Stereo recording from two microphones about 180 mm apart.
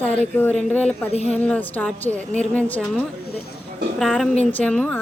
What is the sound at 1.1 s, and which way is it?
Speech, 35° left (ahead or behind).